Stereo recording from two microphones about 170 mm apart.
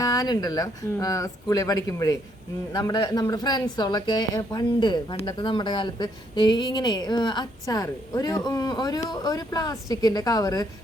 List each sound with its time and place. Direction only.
0.0 s speech: 20° left (ahead or behind)